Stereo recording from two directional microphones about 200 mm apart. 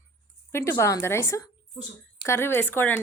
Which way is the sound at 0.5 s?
15° left (ahead or behind).